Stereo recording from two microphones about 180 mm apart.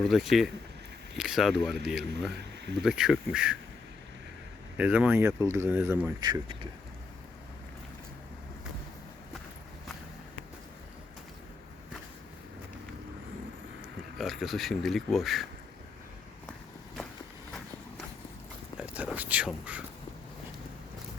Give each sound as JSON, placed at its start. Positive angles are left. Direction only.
{"t": 0.0, "sound": "speech", "side_deg": 0}
{"t": 4.8, "sound": "speech", "side_deg": -10}
{"t": 6.1, "sound": "speech", "side_deg": -20}
{"t": 14.2, "sound": "speech", "side_deg": 0}
{"t": 18.8, "sound": "whispering", "side_deg": -5}